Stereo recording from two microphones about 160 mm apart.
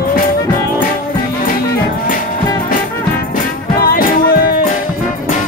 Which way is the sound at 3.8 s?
65° left (ahead or behind).